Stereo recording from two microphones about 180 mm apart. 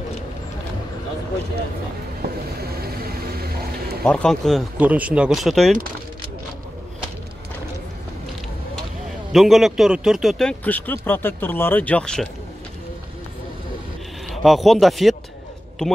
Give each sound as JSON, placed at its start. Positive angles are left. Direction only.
{"t": 2.2, "sound": "boat", "side_deg": -60}
{"t": 2.6, "sound": "vehicle", "side_deg": -55}
{"t": 4.0, "sound": "speech", "side_deg": 5}
{"t": 9.3, "sound": "speech", "side_deg": 0}
{"t": 14.3, "sound": "speech", "side_deg": 0}